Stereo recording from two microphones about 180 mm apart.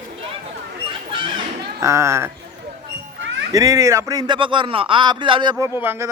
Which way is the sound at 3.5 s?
20° right (ahead or behind).